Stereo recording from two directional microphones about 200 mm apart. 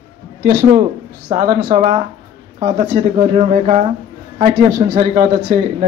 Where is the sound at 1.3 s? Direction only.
45° right (ahead or behind).